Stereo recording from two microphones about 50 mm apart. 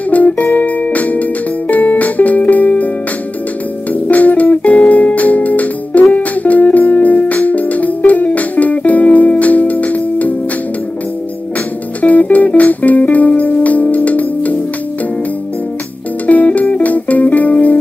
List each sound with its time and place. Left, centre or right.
0.1 s music: left
3.9 s music: left
12.0 s music: left
16.3 s music: left